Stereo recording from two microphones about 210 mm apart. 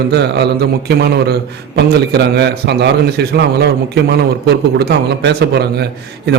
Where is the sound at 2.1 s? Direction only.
50° right (ahead or behind).